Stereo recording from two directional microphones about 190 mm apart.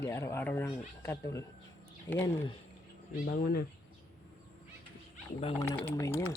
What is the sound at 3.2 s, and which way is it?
Speech, 50° left (ahead or behind).